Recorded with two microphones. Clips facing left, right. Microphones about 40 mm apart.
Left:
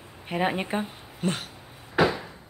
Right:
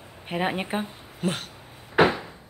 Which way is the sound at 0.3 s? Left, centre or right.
Centre.